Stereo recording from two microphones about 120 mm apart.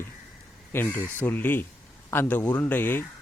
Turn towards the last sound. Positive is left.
turn(degrees=15)  # may be behind; listen again after turning